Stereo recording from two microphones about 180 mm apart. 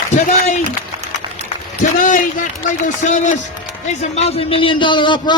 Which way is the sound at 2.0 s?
45° left (ahead or behind).